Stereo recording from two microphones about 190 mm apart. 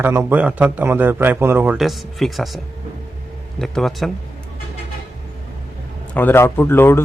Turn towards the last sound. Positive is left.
turn(degrees=10)  # may be behind; listen again after turning